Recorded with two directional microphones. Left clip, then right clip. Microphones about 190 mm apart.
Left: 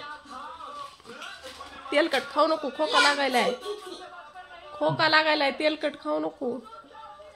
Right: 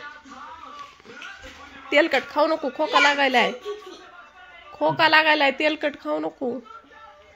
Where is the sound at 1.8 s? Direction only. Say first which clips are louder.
Right 5 dB; 20° right (ahead or behind).